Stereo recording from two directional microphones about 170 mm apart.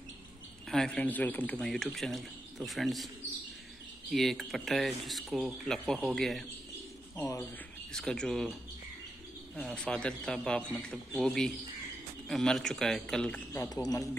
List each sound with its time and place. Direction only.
0.7 s speech: 5° left (ahead or behind)
4.1 s speech: centre (ahead or behind)
7.2 s speech: 15° left (ahead or behind)
7.9 s speech: 5° left (ahead or behind)
9.6 s speech: 5° left (ahead or behind)